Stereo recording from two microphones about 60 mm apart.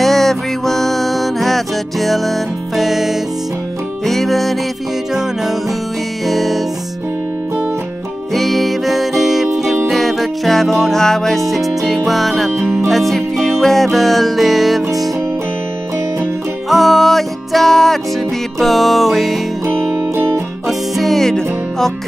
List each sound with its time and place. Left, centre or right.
0.0 s music: centre
6.2 s music: centre
8.4 s music: centre
12.4 s music: centre
12.8 s music: centre
16.6 s music: centre
20.2 s music: right
20.6 s music: centre